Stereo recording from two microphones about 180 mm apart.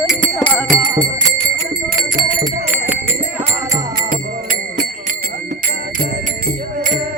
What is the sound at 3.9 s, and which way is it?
Music, 50° right (ahead or behind).